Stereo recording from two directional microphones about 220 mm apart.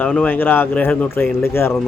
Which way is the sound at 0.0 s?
5° left (ahead or behind).